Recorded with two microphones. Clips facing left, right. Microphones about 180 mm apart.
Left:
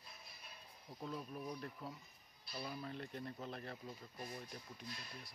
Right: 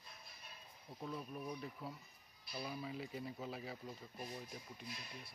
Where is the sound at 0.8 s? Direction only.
Centre (ahead or behind).